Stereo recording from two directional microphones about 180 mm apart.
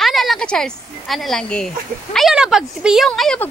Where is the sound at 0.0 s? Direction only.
Centre (ahead or behind).